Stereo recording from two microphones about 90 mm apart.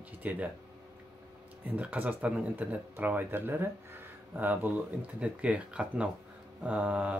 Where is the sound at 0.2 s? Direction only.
15° right (ahead or behind).